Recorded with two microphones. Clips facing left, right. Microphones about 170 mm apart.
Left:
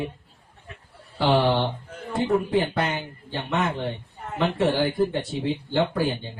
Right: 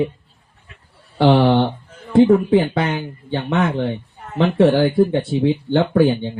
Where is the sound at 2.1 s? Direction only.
60° right (ahead or behind).